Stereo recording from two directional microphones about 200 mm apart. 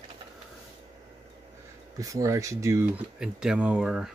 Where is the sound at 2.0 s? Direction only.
15° right (ahead or behind).